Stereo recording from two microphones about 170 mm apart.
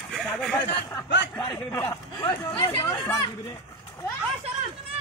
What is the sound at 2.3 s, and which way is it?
Speech, 25° left (ahead or behind).